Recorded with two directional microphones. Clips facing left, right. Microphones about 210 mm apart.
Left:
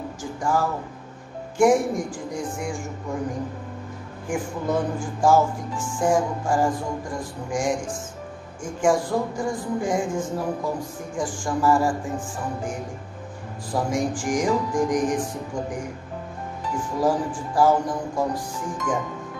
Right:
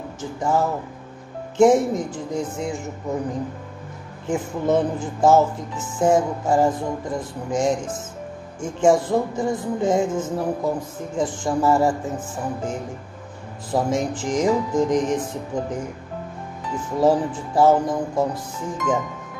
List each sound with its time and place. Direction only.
0.2 s speech: 20° right (ahead or behind)
4.3 s speech: 20° right (ahead or behind)
13.7 s speech: 25° right (ahead or behind)
17.0 s speech: 25° right (ahead or behind)